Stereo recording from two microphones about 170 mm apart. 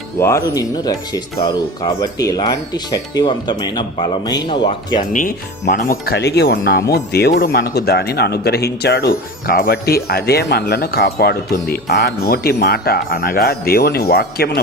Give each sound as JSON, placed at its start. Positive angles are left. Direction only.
{"t": 0.2, "sound": "speech", "side_deg": 15}
{"t": 5.7, "sound": "speech", "side_deg": 55}
{"t": 6.1, "sound": "speech", "side_deg": 75}
{"t": 9.5, "sound": "speech", "side_deg": 60}